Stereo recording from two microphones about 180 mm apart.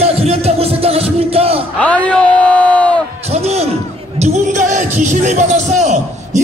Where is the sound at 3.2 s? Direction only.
35° right (ahead or behind).